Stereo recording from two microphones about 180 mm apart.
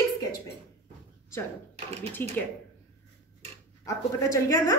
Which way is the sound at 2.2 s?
10° left (ahead or behind).